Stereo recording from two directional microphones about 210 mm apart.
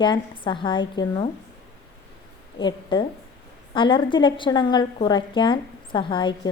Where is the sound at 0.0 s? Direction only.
20° left (ahead or behind).